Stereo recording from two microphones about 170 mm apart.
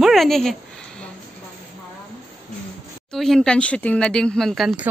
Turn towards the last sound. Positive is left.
turn(degrees=-5)  # may be behind; listen again after turning